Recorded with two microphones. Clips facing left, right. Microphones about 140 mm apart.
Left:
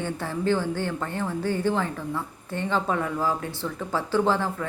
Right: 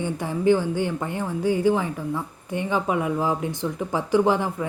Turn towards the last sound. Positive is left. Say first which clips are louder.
# right 3 dB
turn(degrees=-15)  # may be behind; listen again after turning